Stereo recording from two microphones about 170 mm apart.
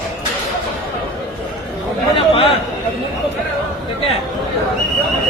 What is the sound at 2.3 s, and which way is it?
Speech, 35° left (ahead or behind).